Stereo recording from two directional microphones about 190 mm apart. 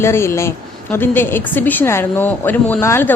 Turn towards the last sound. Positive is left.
turn(degrees=10)  # may be behind; listen again after turning